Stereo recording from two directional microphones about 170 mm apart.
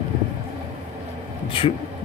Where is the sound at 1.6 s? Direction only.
30° left (ahead or behind).